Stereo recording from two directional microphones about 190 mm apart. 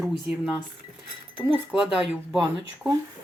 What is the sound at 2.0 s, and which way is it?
Speech, 5° right (ahead or behind).